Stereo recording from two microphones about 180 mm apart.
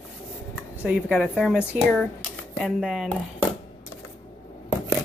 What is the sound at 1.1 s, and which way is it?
Speech, centre (ahead or behind).